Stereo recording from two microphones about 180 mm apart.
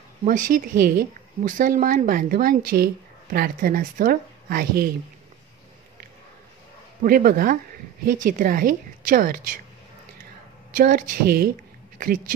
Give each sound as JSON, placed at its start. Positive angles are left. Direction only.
{"t": 0.2, "sound": "speech", "side_deg": -45}
{"t": 7.0, "sound": "speech", "side_deg": -50}
{"t": 10.7, "sound": "speech", "side_deg": -50}